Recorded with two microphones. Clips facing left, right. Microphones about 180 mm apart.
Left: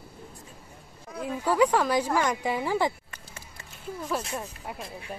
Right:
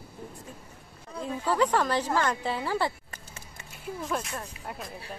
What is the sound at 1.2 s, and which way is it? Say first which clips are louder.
Speech: left 3 dB; 10° left (ahead or behind).